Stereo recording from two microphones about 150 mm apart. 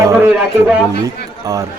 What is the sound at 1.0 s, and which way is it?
Speech, 20° right (ahead or behind).